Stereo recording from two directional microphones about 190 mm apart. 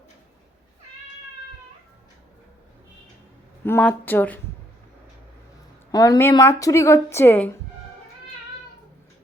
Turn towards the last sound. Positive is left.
turn(degrees=10)  # may be behind; listen again after turning